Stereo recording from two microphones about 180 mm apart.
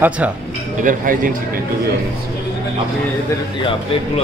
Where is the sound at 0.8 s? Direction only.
50° right (ahead or behind).